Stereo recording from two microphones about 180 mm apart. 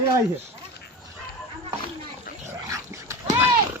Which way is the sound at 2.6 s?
15° right (ahead or behind).